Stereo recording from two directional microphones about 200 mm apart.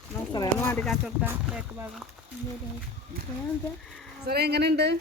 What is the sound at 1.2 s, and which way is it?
Speech, 10° right (ahead or behind).